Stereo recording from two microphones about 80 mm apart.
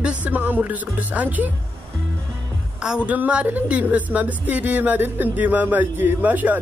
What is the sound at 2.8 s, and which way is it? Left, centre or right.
A woman's voice, centre.